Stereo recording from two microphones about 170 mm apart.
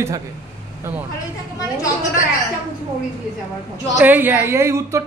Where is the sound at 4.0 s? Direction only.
10° right (ahead or behind).